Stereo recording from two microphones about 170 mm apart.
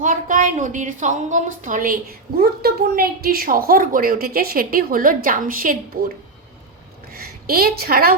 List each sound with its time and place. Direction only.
0.0 s a woman's voice: 50° right (ahead or behind)
7.1 s a woman's voice: 60° right (ahead or behind)